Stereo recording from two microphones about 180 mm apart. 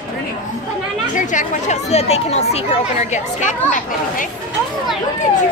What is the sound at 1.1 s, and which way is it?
Speech, 45° left (ahead or behind).